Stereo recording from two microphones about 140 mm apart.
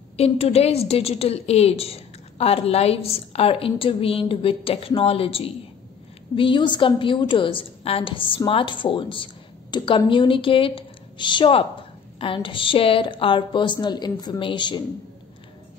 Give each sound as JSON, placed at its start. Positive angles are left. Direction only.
{"t": 0.2, "sound": "a woman's voice", "side_deg": 45}